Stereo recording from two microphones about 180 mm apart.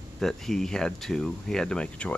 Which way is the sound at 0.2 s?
Centre (ahead or behind).